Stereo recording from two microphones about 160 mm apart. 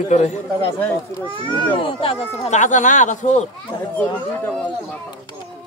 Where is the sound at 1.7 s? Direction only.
35° left (ahead or behind).